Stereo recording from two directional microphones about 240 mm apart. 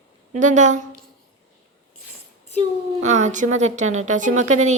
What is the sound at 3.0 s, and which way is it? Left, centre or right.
A woman's voice, right.